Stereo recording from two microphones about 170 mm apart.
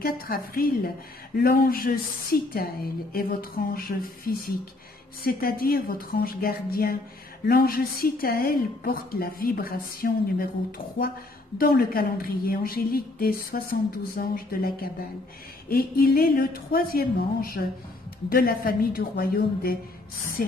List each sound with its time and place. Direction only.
0.0 s a woman's voice: 60° left (ahead or behind)
11.5 s a woman's voice: 60° left (ahead or behind)